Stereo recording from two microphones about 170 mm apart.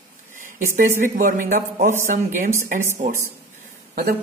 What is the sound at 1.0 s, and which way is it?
Speech, 50° right (ahead or behind).